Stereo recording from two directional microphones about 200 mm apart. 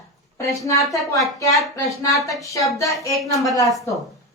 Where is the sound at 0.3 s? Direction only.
15° left (ahead or behind).